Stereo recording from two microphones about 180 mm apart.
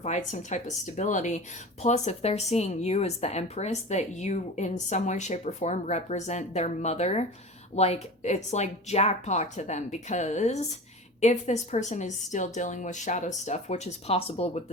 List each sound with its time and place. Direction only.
0.0 s speech: 40° left (ahead or behind)